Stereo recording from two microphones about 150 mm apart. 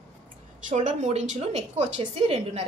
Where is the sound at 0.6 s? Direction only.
55° right (ahead or behind).